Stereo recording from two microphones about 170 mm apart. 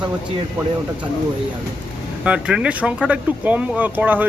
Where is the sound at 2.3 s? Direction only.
5° right (ahead or behind).